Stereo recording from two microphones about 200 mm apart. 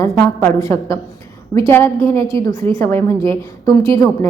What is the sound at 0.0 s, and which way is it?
A woman's voice, 15° left (ahead or behind).